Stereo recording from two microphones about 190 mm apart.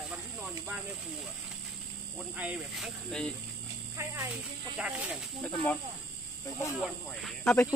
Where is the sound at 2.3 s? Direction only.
5° right (ahead or behind).